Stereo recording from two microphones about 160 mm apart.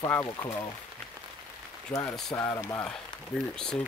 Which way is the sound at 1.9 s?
15° left (ahead or behind).